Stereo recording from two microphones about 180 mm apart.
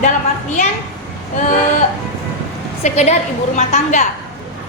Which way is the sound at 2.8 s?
40° left (ahead or behind).